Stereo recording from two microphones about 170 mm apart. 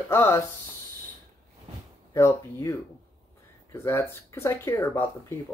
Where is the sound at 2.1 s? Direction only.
15° left (ahead or behind).